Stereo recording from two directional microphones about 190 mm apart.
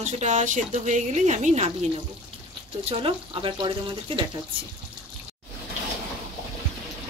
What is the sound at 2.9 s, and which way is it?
Speech, 30° right (ahead or behind).